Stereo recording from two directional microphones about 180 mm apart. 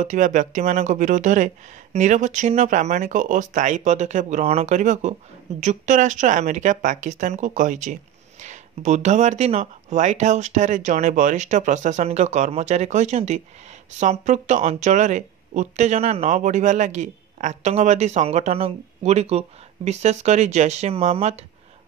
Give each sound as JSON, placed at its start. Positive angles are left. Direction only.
{"t": 0.0, "sound": "speech", "side_deg": -45}